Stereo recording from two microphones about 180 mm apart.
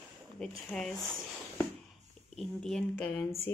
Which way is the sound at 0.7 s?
Centre (ahead or behind).